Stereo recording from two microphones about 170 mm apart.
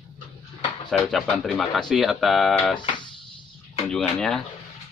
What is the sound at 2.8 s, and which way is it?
Music, 25° left (ahead or behind).